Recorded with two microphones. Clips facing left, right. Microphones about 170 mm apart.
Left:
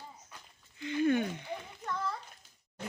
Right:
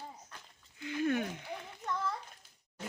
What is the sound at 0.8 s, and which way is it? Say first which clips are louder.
Speech: left 4 dB; centre (ahead or behind).